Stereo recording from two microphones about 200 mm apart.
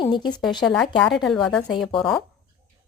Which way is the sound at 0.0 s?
20° left (ahead or behind).